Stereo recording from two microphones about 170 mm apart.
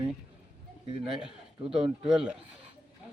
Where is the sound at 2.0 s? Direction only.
5° right (ahead or behind).